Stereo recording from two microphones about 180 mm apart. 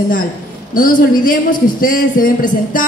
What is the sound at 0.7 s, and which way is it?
A woman's voice, 50° left (ahead or behind).